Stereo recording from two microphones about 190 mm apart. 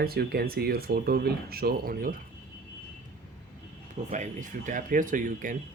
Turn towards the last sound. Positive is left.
turn(degrees=-45)  # may be behind; listen again after turning